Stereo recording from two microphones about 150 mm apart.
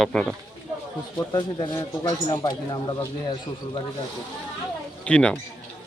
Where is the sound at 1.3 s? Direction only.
35° left (ahead or behind).